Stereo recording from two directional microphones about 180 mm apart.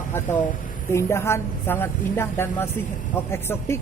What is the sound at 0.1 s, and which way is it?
A woman's voice, 10° left (ahead or behind).